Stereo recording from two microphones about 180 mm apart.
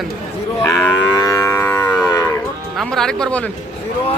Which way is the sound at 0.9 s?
20° left (ahead or behind).